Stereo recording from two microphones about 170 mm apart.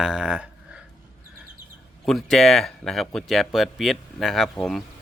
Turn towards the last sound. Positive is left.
turn(degrees=0)  # may be behind; listen again after turning